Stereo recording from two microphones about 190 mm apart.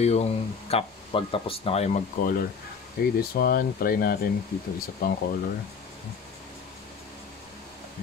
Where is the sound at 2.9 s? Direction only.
55° left (ahead or behind).